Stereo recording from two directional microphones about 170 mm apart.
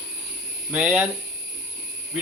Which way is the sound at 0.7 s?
10° right (ahead or behind).